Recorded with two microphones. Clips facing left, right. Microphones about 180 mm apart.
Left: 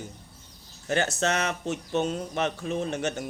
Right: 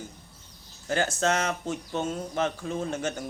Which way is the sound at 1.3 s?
65° left (ahead or behind).